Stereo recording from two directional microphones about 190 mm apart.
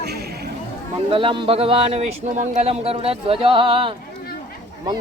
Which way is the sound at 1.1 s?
25° right (ahead or behind).